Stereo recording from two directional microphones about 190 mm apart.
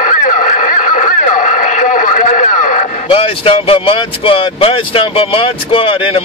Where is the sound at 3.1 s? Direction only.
30° left (ahead or behind).